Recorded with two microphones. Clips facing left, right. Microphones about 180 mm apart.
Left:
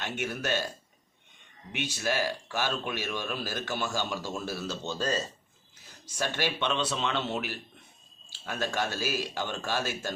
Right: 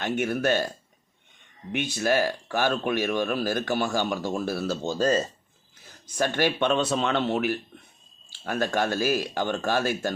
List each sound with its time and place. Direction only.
0.0 s speech: 50° right (ahead or behind)
1.7 s speech: 50° right (ahead or behind)